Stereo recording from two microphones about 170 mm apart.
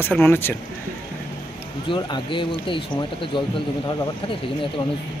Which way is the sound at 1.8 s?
30° left (ahead or behind).